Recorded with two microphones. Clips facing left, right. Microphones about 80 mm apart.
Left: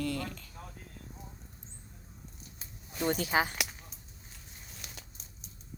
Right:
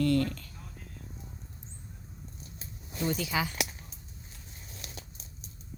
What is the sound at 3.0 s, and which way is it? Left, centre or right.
Speech, left.